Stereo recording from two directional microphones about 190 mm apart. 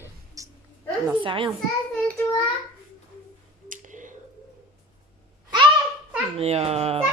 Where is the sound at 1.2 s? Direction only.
25° right (ahead or behind).